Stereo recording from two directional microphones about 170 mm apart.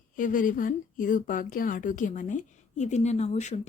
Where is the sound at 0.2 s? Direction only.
50° left (ahead or behind).